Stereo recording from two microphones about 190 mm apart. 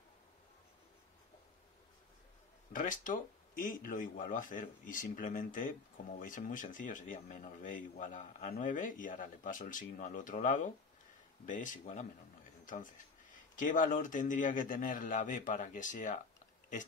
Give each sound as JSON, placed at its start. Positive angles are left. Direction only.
{"t": 2.7, "sound": "speech", "side_deg": 45}